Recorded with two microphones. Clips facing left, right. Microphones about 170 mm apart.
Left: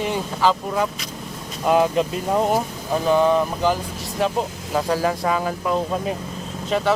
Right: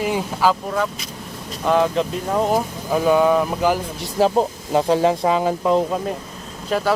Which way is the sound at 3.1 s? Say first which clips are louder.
Right 1 dB; 10° right (ahead or behind).